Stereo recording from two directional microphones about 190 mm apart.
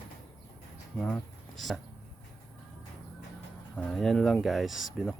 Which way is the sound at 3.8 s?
Centre (ahead or behind).